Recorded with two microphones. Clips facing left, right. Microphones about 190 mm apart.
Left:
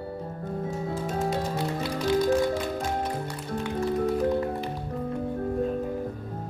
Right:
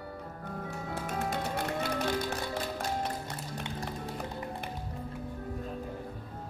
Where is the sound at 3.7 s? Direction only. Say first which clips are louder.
Left 17 dB; 65° left (ahead or behind).